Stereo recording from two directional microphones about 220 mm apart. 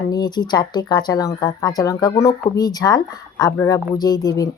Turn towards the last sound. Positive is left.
turn(degrees=15)  # may be behind; listen again after turning